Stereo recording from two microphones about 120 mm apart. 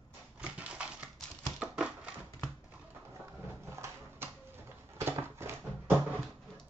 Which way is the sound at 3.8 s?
20° right (ahead or behind).